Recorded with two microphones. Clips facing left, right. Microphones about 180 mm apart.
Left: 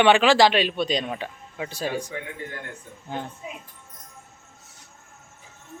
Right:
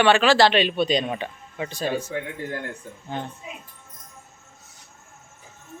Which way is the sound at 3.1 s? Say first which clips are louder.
Right 1 dB; 10° left (ahead or behind).